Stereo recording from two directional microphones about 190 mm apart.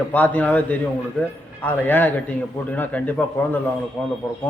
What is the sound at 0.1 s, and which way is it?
A man's voice, 10° left (ahead or behind).